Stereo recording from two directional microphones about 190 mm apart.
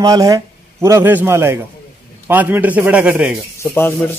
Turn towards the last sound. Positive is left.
turn(degrees=10)  # may be behind; listen again after turning